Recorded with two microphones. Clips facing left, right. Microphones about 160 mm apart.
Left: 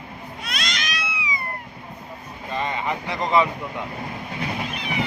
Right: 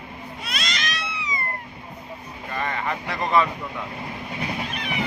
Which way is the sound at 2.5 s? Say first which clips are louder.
Left 2 dB; 20° left (ahead or behind).